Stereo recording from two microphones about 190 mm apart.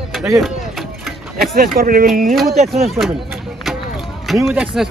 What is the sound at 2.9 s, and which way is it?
Speech, centre (ahead or behind).